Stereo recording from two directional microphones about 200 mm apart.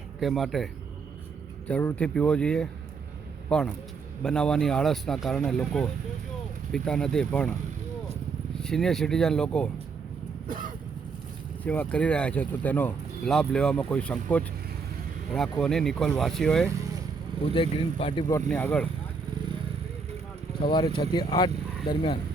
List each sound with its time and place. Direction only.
0.2 s speech: centre (ahead or behind)
8.6 s speech: centre (ahead or behind)
11.6 s speech: 5° left (ahead or behind)
17.5 s speech: 25° left (ahead or behind)
18.4 s speech: 5° left (ahead or behind)
20.6 s speech: 25° left (ahead or behind)